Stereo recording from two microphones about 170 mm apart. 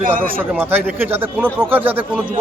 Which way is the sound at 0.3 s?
10° right (ahead or behind).